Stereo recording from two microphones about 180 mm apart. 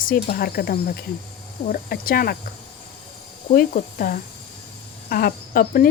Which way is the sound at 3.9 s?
55° left (ahead or behind).